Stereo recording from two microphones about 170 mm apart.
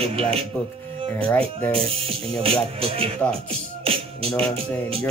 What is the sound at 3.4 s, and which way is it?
Music, 35° right (ahead or behind).